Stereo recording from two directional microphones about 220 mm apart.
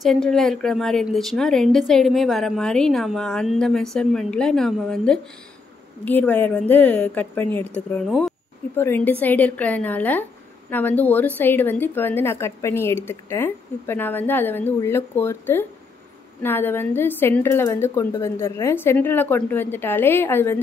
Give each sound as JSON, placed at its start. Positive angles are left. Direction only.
{"t": 0.0, "sound": "a woman's voice", "side_deg": 0}